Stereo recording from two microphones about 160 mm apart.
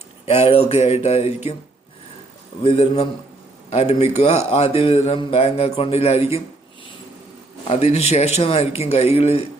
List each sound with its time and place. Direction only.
0.3 s speech: 35° left (ahead or behind)
2.6 s speech: 35° left (ahead or behind)
7.7 s speech: 40° left (ahead or behind)